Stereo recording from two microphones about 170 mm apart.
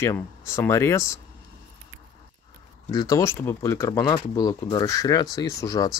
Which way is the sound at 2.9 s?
20° left (ahead or behind).